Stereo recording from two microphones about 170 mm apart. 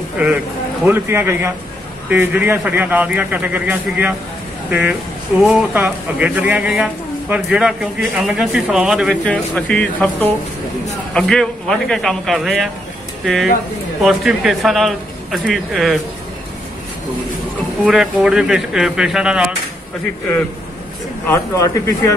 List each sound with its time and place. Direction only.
0.8 s a man's voice: 15° right (ahead or behind)
9.1 s a man's voice: 5° left (ahead or behind)
17.8 s a man's voice: 5° right (ahead or behind)
21.3 s speech: 20° left (ahead or behind)